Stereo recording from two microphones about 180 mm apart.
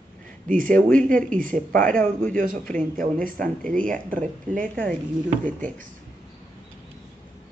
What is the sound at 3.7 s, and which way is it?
Speech, 45° right (ahead or behind).